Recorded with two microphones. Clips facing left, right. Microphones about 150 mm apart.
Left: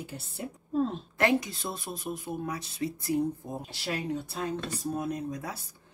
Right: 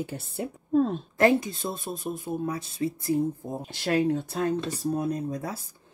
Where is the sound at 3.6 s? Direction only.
50° right (ahead or behind).